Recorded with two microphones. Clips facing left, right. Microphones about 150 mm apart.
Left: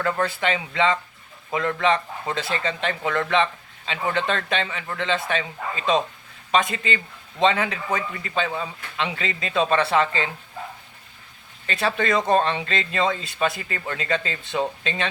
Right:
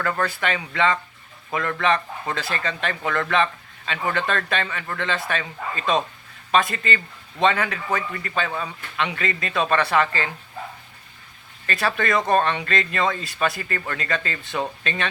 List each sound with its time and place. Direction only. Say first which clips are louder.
0.0 s speech: left 1 dB; 20° left (ahead or behind)
11.6 s speech: even; 20° left (ahead or behind)